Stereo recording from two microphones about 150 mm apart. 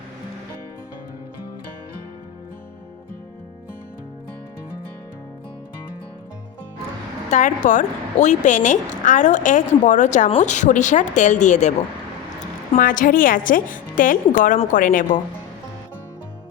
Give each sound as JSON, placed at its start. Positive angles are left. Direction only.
{"t": 7.3, "sound": "a woman's voice", "side_deg": 55}
{"t": 12.7, "sound": "a woman's voice", "side_deg": 65}